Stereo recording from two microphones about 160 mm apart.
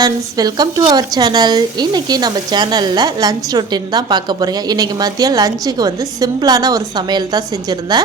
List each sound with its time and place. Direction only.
0.0 s speech: 25° right (ahead or behind)